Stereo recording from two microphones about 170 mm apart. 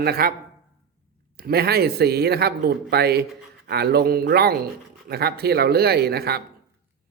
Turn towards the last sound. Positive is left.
turn(degrees=-70)  # may be behind; listen again after turning